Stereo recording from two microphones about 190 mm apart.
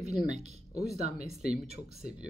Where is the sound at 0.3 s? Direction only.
35° right (ahead or behind).